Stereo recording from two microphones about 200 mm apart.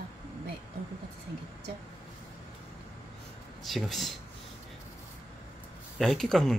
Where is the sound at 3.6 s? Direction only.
Centre (ahead or behind).